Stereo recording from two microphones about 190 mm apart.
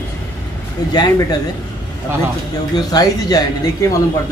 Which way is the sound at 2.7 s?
20° left (ahead or behind).